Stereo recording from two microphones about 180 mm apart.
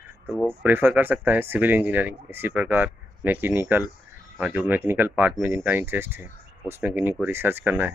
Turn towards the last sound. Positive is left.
turn(degrees=-10)  # may be behind; listen again after turning